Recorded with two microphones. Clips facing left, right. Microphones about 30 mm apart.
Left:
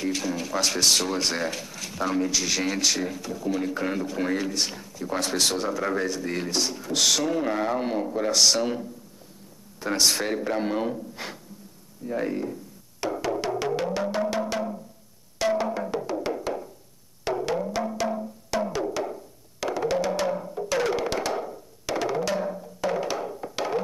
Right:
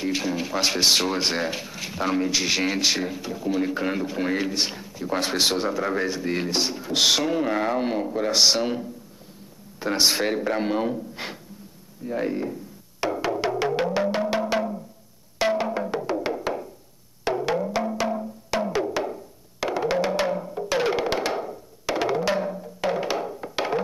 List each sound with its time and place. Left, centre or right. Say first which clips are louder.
0.0 s speech: right 2 dB; right
13.0 s music: right 2 dB; right
15.3 s wood block: right 1 dB; right
16.1 s music: right 2 dB; right
19.0 s a sound: right 2 dB; centre
19.7 s music: right 2 dB; right
21.4 s wood block: right 1 dB; centre
22.8 s music: right 2 dB; right